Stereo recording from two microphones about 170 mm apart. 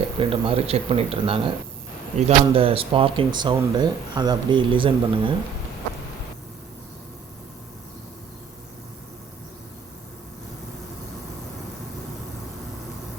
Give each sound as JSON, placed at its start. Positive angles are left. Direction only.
{"t": 0.2, "sound": "speech", "side_deg": -30}